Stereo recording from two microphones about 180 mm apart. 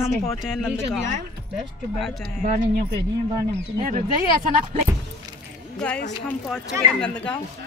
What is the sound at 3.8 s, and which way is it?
Speech, 50° right (ahead or behind).